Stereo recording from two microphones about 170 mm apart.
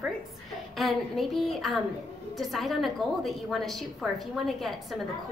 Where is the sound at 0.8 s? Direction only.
Centre (ahead or behind).